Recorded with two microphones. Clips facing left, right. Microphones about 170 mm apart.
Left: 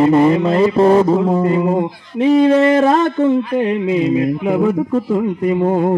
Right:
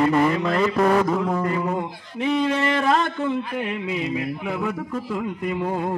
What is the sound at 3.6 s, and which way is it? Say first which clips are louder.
Speech: left 11 dB; 25° left (ahead or behind).